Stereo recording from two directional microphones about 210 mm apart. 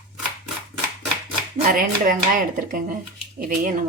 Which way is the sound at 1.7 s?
40° right (ahead or behind).